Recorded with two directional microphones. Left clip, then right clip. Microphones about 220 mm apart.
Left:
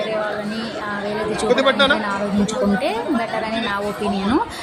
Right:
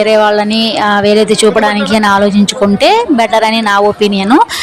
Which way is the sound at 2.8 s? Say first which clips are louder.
Right 13 dB; 45° right (ahead or behind).